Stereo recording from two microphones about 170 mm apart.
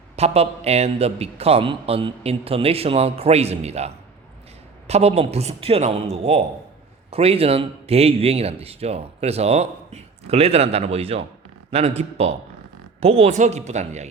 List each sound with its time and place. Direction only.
0.2 s speech: 35° right (ahead or behind)